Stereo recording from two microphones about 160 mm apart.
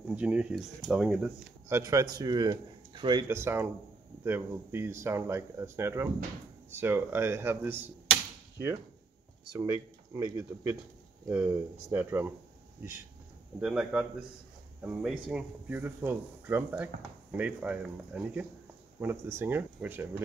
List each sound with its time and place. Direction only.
0.1 s speech: 10° right (ahead or behind)
1.7 s speech: 20° right (ahead or behind)
3.3 s speech: 15° right (ahead or behind)
9.6 s speech: 20° right (ahead or behind)
13.6 s speech: 5° right (ahead or behind)